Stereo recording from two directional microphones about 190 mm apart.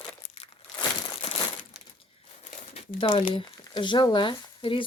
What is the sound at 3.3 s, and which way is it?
Speech, 25° left (ahead or behind).